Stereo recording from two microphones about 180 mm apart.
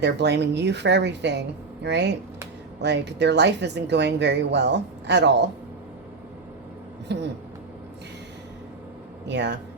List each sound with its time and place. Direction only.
0.0 s speech: 75° right (ahead or behind)
7.1 s speech: 70° right (ahead or behind)
9.2 s speech: 75° right (ahead or behind)